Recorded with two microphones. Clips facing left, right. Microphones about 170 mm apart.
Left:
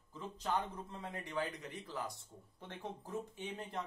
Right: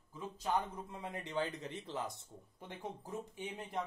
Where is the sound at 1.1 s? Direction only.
25° right (ahead or behind).